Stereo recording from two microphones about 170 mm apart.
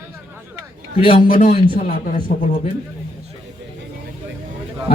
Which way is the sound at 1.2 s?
55° left (ahead or behind).